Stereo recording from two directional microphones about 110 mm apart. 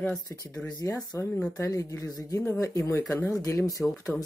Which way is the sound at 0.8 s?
25° left (ahead or behind).